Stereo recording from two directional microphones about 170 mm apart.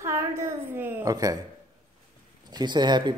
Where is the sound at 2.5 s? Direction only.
25° right (ahead or behind).